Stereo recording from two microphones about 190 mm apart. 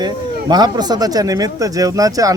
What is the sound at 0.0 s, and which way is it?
A man's voice, 20° right (ahead or behind).